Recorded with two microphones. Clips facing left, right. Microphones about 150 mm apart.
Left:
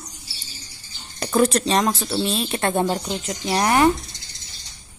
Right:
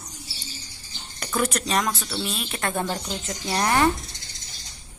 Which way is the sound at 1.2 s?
30° left (ahead or behind).